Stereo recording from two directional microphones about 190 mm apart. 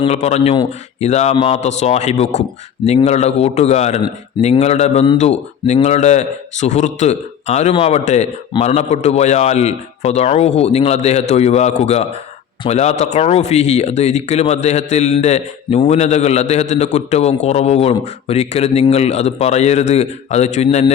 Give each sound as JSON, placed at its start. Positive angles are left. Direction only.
{"t": 0.0, "sound": "speech", "side_deg": 35}